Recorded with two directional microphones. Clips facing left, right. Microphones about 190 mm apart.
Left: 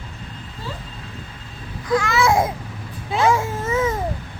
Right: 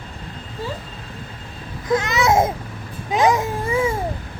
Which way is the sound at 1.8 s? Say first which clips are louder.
Even; 20° right (ahead or behind).